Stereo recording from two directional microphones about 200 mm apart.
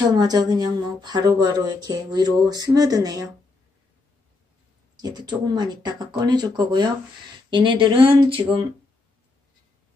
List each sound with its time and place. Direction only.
0.0 s speech: 20° right (ahead or behind)
5.0 s speech: 20° right (ahead or behind)